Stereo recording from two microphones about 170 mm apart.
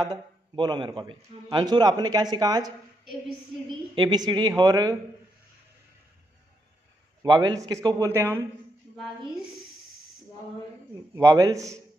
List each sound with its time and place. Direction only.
0.0 s a man's voice: 25° right (ahead or behind)
3.9 s a man's voice: 25° right (ahead or behind)
7.2 s a man's voice: 25° right (ahead or behind)
11.1 s a man's voice: 20° right (ahead or behind)